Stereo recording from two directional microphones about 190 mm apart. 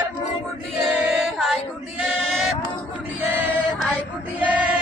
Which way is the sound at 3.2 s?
10° right (ahead or behind).